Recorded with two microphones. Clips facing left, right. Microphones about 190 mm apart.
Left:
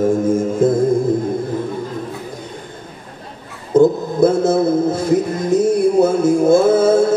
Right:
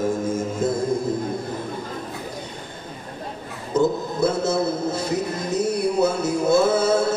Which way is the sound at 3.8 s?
50° left (ahead or behind).